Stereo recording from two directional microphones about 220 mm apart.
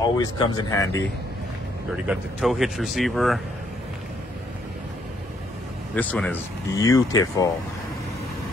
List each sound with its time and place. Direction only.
0.0 s speech: 15° left (ahead or behind)
2.0 s speech: centre (ahead or behind)
5.9 s speech: 5° left (ahead or behind)